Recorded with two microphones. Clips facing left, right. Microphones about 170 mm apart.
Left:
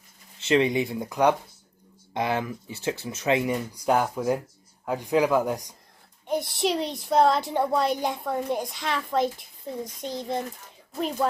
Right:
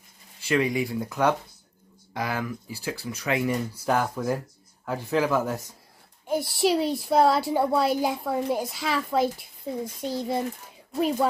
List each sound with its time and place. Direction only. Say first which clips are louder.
0.4 s speech: left 2 dB; 25° left (ahead or behind)
6.2 s a child's voice: right 2 dB; 5° right (ahead or behind)